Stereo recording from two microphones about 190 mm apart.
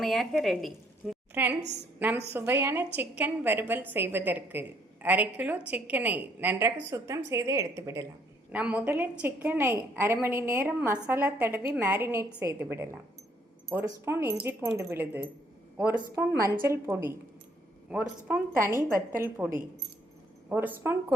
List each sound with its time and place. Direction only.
0.0 s a woman's voice: centre (ahead or behind)
1.3 s a woman's voice: 10° right (ahead or behind)
16.4 s a woman's voice: 15° right (ahead or behind)